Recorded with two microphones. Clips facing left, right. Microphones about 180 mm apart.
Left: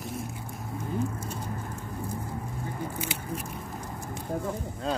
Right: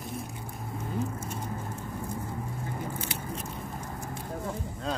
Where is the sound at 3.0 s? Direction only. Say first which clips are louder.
Left 2 dB; 10° left (ahead or behind).